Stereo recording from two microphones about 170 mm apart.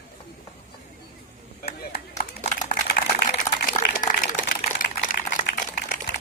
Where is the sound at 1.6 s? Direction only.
65° left (ahead or behind).